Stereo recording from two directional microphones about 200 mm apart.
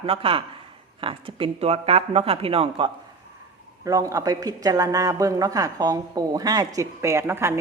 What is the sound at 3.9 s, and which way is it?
Speech, 15° right (ahead or behind).